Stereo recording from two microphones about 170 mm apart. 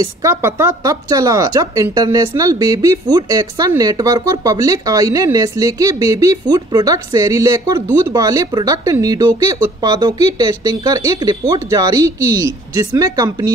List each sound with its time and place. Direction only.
0.0 s a woman's voice: 15° right (ahead or behind)